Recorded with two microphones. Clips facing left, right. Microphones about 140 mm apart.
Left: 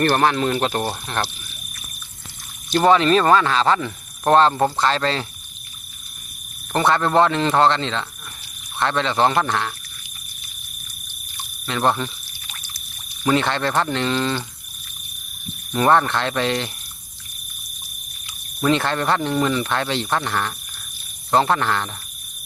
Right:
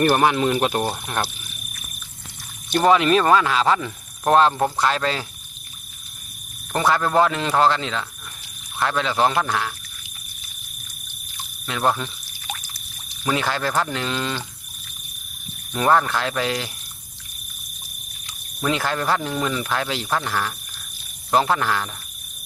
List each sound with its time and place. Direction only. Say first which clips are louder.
0.0 s speech: even; 10° right (ahead or behind)
2.8 s speech: left 1 dB; 5° right (ahead or behind)
6.7 s speech: left 2 dB; 5° right (ahead or behind)
11.6 s speech: left 2 dB; centre (ahead or behind)
13.2 s speech: left 3 dB; 5° right (ahead or behind)
15.7 s speech: left 2 dB; centre (ahead or behind)
18.6 s speech: left 3 dB; 5° right (ahead or behind)